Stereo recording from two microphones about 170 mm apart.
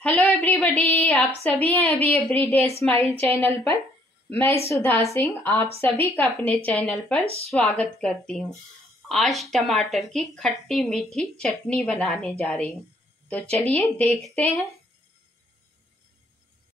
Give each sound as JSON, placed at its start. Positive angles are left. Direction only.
{"t": 0.0, "sound": "a woman's voice", "side_deg": 10}
{"t": 7.2, "sound": "speech", "side_deg": -35}
{"t": 7.5, "sound": "a woman's voice", "side_deg": 5}